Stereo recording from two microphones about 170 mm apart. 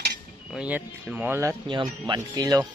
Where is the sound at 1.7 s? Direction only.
30° right (ahead or behind).